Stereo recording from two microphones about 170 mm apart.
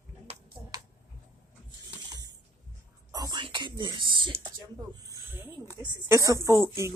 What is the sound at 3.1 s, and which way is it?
Whispering, 25° right (ahead or behind).